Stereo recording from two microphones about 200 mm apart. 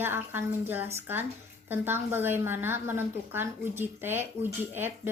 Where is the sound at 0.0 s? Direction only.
10° right (ahead or behind).